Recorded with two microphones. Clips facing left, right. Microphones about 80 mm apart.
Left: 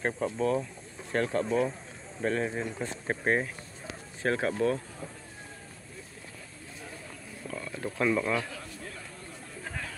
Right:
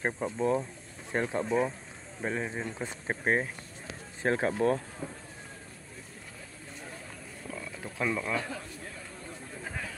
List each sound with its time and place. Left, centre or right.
0.0 s speech: centre
2.2 s speech: centre
4.2 s speech: right
5.0 s speech: right
7.4 s a sound: centre
9.7 s a sound: centre